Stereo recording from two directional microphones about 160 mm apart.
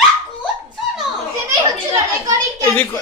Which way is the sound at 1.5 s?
20° right (ahead or behind).